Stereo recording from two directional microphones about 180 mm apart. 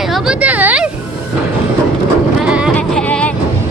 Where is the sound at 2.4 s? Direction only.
5° right (ahead or behind).